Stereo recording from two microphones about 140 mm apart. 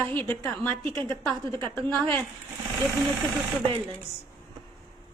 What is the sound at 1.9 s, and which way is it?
Speech, 10° left (ahead or behind).